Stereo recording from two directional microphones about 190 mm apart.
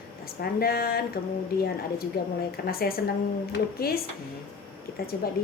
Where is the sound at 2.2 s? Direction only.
55° left (ahead or behind).